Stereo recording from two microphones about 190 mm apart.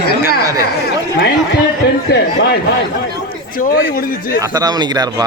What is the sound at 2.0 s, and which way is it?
Speech, 60° left (ahead or behind).